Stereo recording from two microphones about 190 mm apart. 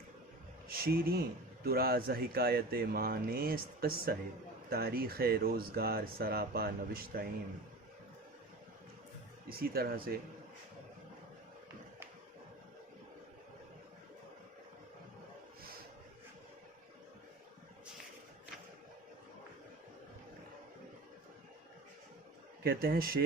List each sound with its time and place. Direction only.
0.7 s speech: 50° right (ahead or behind)
9.5 s speech: 50° right (ahead or behind)
22.6 s speech: 55° right (ahead or behind)